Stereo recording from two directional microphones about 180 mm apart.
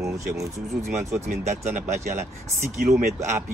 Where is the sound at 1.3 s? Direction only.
40° right (ahead or behind).